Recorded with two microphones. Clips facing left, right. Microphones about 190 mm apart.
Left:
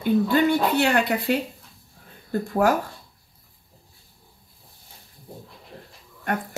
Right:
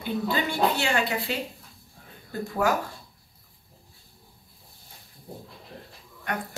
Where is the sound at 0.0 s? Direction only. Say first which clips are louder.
Left 8 dB; 50° left (ahead or behind).